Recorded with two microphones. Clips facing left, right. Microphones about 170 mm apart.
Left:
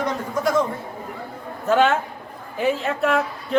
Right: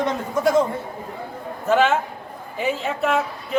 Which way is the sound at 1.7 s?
Centre (ahead or behind).